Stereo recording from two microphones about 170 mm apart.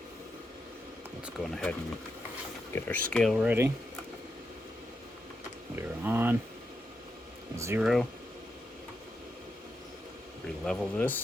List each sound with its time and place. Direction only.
1.2 s speech: centre (ahead or behind)
2.7 s speech: 10° left (ahead or behind)
3.3 s speech: 10° right (ahead or behind)
5.7 s speech: 15° right (ahead or behind)
7.5 s speech: 15° right (ahead or behind)
7.8 s speech: centre (ahead or behind)
10.7 s speech: 5° left (ahead or behind)